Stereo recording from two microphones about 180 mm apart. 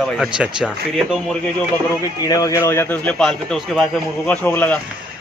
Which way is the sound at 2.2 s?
20° left (ahead or behind).